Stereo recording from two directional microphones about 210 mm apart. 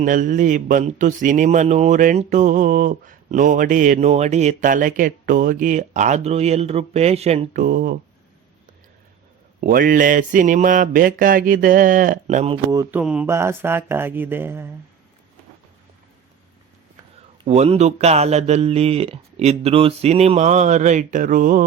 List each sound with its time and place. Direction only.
0.0 s speech: 40° right (ahead or behind)
9.6 s speech: 45° right (ahead or behind)
12.7 s mantra: 15° right (ahead or behind)
13.0 s mantra: 5° right (ahead or behind)
17.4 s speech: 30° right (ahead or behind)